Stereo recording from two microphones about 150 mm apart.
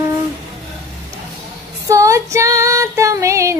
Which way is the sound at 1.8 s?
20° right (ahead or behind).